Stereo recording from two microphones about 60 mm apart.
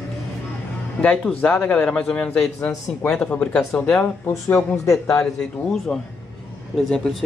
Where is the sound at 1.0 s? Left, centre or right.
Centre.